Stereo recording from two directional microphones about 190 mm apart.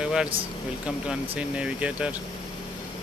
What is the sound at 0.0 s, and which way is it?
Air conditioning, 5° right (ahead or behind).